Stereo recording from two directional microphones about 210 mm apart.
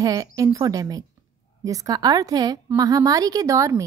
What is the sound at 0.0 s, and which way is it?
A woman's voice, 15° right (ahead or behind).